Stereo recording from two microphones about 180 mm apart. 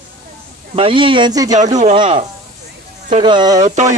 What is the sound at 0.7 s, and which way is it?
Speech, 30° right (ahead or behind).